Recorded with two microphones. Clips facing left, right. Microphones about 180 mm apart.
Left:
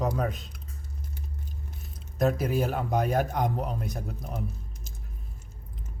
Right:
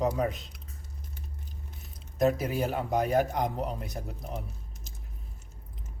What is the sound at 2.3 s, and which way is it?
Speech, centre (ahead or behind).